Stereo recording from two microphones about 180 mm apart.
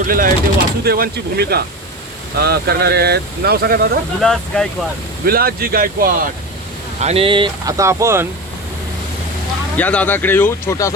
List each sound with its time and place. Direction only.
0.0 s speech: 50° right (ahead or behind)
4.2 s speech: 5° left (ahead or behind)
5.2 s speech: 55° right (ahead or behind)
7.0 s speech: 35° right (ahead or behind); by 8.3 s 15° right (ahead or behind)
9.7 s speech: 10° left (ahead or behind)